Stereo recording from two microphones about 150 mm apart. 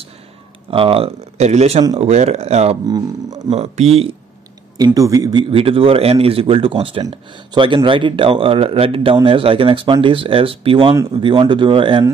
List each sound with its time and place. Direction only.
0.7 s speech: 35° right (ahead or behind)
2.9 s speech: 25° right (ahead or behind)
3.5 s speech: 45° right (ahead or behind)
4.7 s speech: 25° right (ahead or behind)
5.5 s speech: 40° right (ahead or behind)